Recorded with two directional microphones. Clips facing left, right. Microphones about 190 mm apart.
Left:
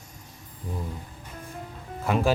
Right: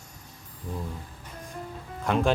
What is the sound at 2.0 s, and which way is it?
Speech, 5° left (ahead or behind).